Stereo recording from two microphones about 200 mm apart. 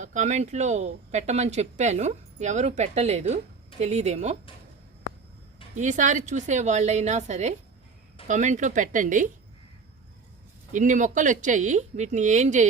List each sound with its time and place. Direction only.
0.0 s speech: 35° right (ahead or behind)
5.7 s speech: 40° right (ahead or behind)
10.7 s speech: 40° right (ahead or behind)